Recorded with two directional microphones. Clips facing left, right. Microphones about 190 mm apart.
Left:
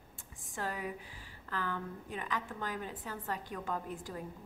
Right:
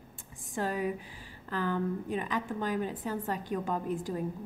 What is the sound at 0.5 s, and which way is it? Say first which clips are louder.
A woman's voice: right 7 dB; 20° right (ahead or behind).